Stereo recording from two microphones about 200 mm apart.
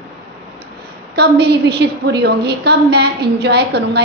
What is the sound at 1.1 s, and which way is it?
A woman's voice, 55° right (ahead or behind).